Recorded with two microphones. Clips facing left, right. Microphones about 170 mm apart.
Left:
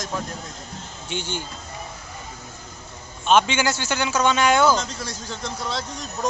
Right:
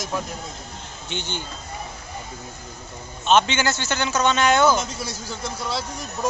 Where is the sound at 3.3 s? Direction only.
10° left (ahead or behind).